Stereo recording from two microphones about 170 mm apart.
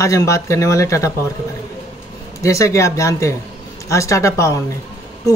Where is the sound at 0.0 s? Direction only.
20° left (ahead or behind).